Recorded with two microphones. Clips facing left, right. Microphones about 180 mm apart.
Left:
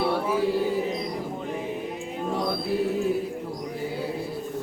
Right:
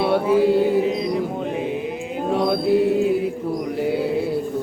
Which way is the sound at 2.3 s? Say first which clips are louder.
Right 9 dB; 70° right (ahead or behind).